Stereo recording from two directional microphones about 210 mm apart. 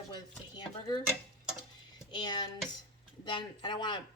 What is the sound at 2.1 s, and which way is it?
A woman's voice, 20° left (ahead or behind).